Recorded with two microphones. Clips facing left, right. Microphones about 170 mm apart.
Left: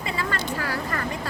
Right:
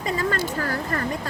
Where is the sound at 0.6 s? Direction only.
45° right (ahead or behind).